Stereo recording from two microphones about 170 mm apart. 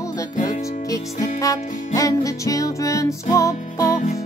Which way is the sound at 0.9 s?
20° left (ahead or behind).